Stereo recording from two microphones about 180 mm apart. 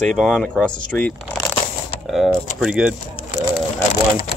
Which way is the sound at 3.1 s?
35° left (ahead or behind).